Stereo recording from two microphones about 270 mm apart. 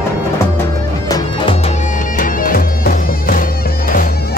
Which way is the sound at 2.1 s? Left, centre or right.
Left.